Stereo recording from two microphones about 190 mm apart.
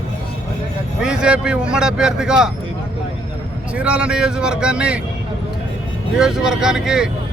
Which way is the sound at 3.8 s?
5° right (ahead or behind).